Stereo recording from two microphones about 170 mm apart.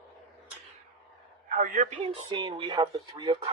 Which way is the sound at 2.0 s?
30° right (ahead or behind).